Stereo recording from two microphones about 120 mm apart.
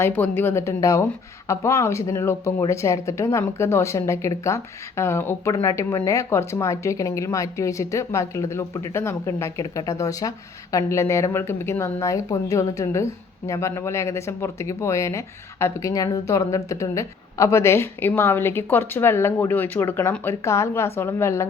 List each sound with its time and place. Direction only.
0.0 s speech: 15° left (ahead or behind)